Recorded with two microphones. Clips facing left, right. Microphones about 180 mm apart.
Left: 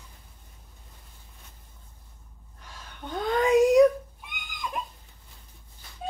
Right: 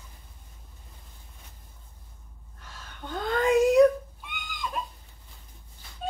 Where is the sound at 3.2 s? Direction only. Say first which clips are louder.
Left 1 dB; 15° left (ahead or behind).